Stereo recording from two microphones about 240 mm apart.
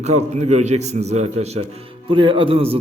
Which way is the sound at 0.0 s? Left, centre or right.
Right.